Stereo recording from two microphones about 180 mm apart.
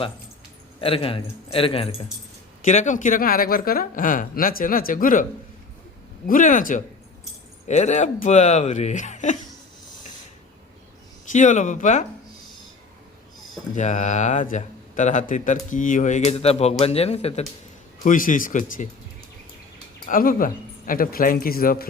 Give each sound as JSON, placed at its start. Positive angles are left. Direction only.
{"t": 0.8, "sound": "speech", "side_deg": 30}
{"t": 2.6, "sound": "speech", "side_deg": 45}
{"t": 6.2, "sound": "speech", "side_deg": 50}
{"t": 11.3, "sound": "speech", "side_deg": 45}
{"t": 13.7, "sound": "speech", "side_deg": 40}
{"t": 18.0, "sound": "speech", "side_deg": 45}
{"t": 20.1, "sound": "speech", "side_deg": 50}